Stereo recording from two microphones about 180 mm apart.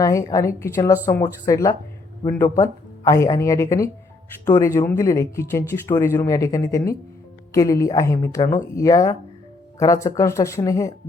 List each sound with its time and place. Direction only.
0.0 s speech: 20° left (ahead or behind)